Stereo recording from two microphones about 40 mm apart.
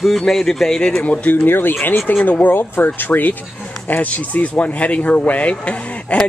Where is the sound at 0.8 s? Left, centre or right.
Left.